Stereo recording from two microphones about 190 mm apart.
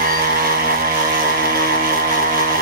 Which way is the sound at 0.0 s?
50° right (ahead or behind).